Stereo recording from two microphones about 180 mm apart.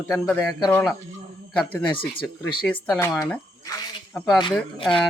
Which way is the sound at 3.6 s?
20° left (ahead or behind).